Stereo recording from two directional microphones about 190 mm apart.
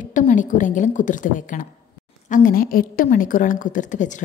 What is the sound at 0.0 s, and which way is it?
A woman's voice, 40° left (ahead or behind).